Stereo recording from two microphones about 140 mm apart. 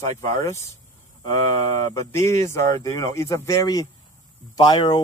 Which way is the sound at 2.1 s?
20° left (ahead or behind).